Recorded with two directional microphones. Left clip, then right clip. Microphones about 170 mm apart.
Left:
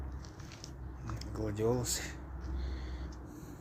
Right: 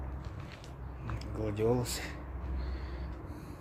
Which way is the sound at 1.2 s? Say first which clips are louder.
Right 2 dB; 5° right (ahead or behind).